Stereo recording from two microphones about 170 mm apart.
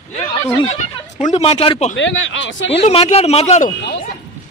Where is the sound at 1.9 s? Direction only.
90° left.